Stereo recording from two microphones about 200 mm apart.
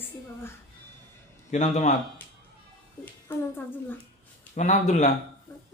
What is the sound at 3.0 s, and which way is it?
Speech, 10° left (ahead or behind).